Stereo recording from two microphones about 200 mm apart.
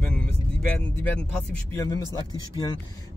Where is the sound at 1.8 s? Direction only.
15° left (ahead or behind).